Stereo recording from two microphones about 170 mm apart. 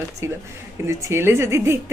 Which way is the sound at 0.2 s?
15° right (ahead or behind).